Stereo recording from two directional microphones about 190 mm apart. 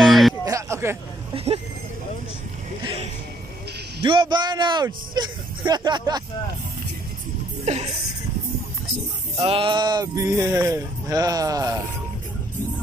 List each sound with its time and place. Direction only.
0.0 s a sound: centre (ahead or behind)
0.5 s a sound: 15° right (ahead or behind)
1.3 s speech: 30° right (ahead or behind)
2.8 s music: 30° right (ahead or behind)
4.0 s speech: 25° right (ahead or behind)
7.6 s speech: 35° right (ahead or behind)
9.4 s speech: 30° right (ahead or behind)